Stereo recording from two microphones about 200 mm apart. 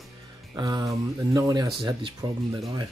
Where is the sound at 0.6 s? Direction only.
20° right (ahead or behind).